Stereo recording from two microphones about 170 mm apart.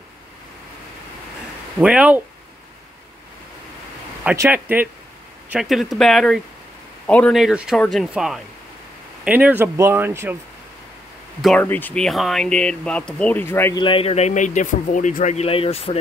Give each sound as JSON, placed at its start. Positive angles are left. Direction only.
{"t": 1.8, "sound": "speech", "side_deg": -5}
{"t": 4.2, "sound": "speech", "side_deg": -10}
{"t": 11.4, "sound": "speech", "side_deg": 10}
{"t": 13.7, "sound": "speech", "side_deg": 30}